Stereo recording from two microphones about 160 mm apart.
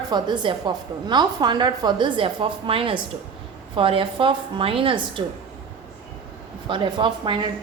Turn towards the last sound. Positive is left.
turn(degrees=-30)  # may be behind; listen again after turning